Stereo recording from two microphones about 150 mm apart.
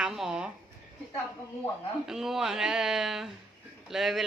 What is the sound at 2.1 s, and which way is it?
A woman's voice, 5° right (ahead or behind).